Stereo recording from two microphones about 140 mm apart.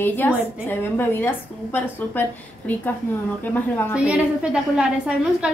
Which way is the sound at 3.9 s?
10° right (ahead or behind).